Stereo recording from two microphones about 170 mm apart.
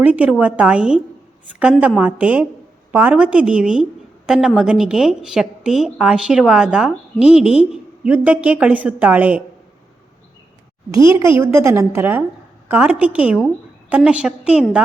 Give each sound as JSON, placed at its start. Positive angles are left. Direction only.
{"t": 0.0, "sound": "a woman's voice", "side_deg": -10}
{"t": 11.1, "sound": "a woman's voice", "side_deg": -15}